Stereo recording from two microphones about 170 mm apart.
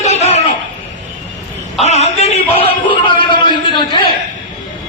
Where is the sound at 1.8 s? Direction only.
40° left (ahead or behind).